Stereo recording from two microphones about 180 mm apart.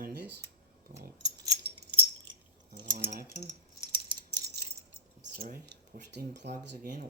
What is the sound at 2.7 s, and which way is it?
Speech, 25° right (ahead or behind).